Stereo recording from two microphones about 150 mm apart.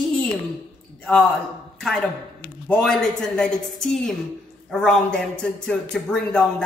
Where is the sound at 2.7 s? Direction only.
5° left (ahead or behind).